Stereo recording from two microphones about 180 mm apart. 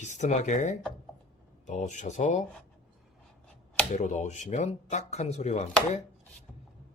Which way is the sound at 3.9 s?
40° left (ahead or behind).